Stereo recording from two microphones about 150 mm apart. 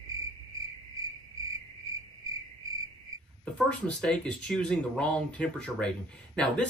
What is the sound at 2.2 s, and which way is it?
Cricket, 25° right (ahead or behind).